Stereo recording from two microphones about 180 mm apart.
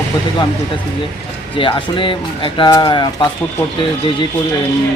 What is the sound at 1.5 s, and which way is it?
Speech, 30° left (ahead or behind).